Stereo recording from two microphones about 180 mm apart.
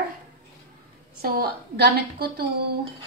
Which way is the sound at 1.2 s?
60° right (ahead or behind).